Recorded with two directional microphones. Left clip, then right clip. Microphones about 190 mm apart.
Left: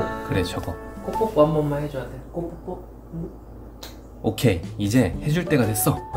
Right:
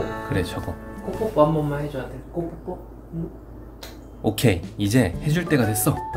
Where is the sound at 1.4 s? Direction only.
25° left (ahead or behind).